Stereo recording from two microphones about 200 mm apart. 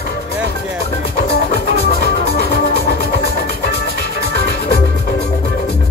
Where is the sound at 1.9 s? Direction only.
50° left (ahead or behind).